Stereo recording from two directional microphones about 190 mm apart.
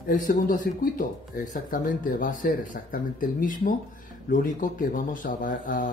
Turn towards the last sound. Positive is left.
turn(degrees=45)  # may be behind; listen again after turning